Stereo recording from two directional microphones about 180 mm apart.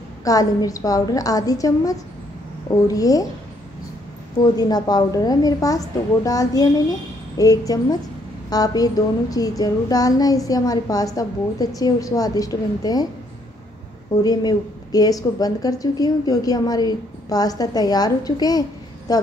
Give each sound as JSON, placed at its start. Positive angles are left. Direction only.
{"t": 0.2, "sound": "a woman's voice", "side_deg": 20}
{"t": 4.4, "sound": "a woman's voice", "side_deg": 20}
{"t": 14.2, "sound": "a woman's voice", "side_deg": 20}